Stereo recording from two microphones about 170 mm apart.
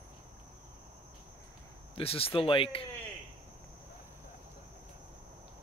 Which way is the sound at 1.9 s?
35° left (ahead or behind).